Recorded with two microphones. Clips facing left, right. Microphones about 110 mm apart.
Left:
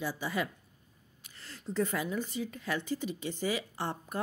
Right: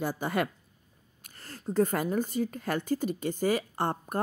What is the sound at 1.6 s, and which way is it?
A woman's voice, 45° right (ahead or behind).